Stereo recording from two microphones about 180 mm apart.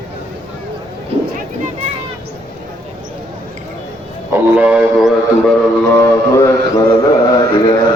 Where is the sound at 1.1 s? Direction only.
35° right (ahead or behind).